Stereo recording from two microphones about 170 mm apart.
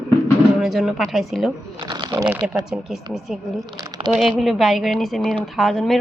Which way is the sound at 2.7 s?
Centre (ahead or behind).